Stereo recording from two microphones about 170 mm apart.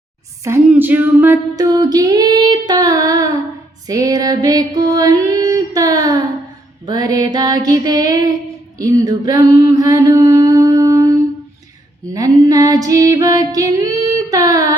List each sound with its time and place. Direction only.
0.4 s female singing: 15° right (ahead or behind)
3.8 s music: 20° right (ahead or behind)
6.8 s female singing: 25° right (ahead or behind)
8.8 s mantra: 20° right (ahead or behind)
12.1 s female singing: 20° right (ahead or behind)